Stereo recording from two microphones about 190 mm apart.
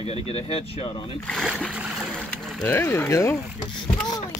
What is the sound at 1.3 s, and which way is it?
Speech, centre (ahead or behind).